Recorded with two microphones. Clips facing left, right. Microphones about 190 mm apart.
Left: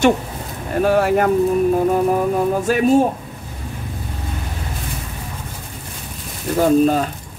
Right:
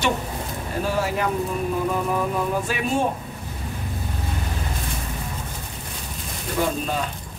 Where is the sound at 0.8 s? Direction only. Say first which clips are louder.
Left 9 dB; 60° left (ahead or behind).